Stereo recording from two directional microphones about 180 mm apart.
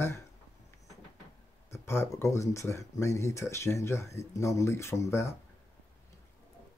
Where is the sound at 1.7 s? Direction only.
15° left (ahead or behind).